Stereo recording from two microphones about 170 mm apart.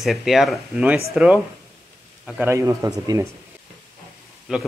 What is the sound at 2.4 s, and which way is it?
Speech, 15° right (ahead or behind).